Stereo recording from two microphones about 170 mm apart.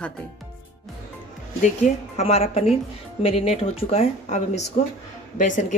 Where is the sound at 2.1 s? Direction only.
40° left (ahead or behind).